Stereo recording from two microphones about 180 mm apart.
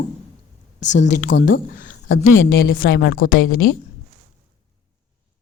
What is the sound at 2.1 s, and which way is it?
A woman's voice, 90° left.